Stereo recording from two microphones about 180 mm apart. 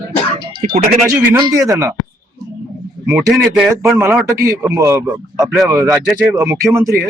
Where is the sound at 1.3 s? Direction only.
20° right (ahead or behind).